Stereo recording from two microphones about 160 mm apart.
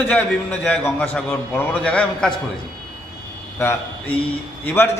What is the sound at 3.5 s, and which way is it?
Speech, 15° left (ahead or behind).